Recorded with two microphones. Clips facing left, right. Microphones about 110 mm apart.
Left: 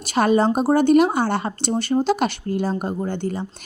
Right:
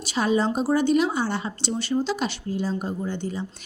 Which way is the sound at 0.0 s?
55° left (ahead or behind).